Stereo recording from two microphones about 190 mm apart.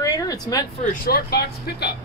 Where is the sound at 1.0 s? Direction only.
55° left (ahead or behind).